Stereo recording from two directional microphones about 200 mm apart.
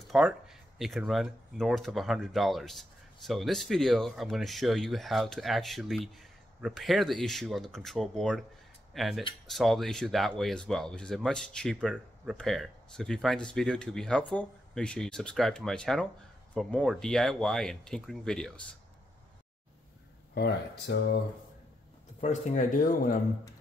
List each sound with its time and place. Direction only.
0.1 s speech: centre (ahead or behind)
20.3 s speech: 55° left (ahead or behind)
22.2 s speech: 35° left (ahead or behind)